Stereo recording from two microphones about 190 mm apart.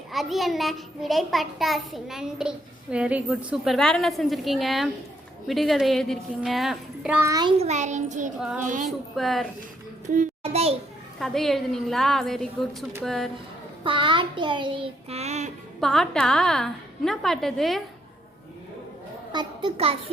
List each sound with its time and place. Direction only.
0.1 s a child's voice: centre (ahead or behind); by 7.5 s 20° right (ahead or behind)
7.6 s a child's voice: 40° right (ahead or behind)
8.6 s female singing: 45° right (ahead or behind)
9.1 s a child's voice: centre (ahead or behind)
10.1 s a child's voice: 40° right (ahead or behind)
11.2 s a child's voice: centre (ahead or behind)
13.8 s child singing: 25° right (ahead or behind)
15.8 s a child's voice: centre (ahead or behind)
19.3 s a child's voice: 25° right (ahead or behind)